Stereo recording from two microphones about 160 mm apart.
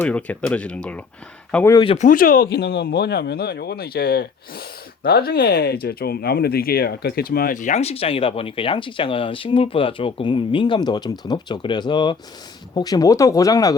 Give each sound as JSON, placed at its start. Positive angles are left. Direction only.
{"t": 0.0, "sound": "speech", "side_deg": 10}
{"t": 1.7, "sound": "speech", "side_deg": 30}
{"t": 2.0, "sound": "speech", "side_deg": 55}